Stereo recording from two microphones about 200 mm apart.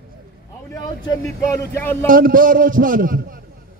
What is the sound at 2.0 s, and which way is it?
A man's voice, 45° right (ahead or behind).